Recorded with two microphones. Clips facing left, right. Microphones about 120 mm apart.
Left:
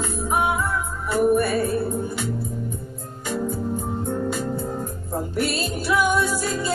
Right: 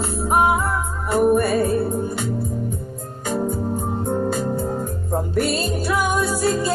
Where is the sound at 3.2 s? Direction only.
50° right (ahead or behind).